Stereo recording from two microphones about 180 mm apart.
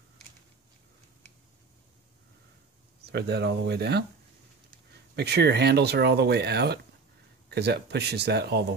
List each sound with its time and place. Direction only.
3.1 s speech: 65° right (ahead or behind)
5.1 s speech: 65° right (ahead or behind)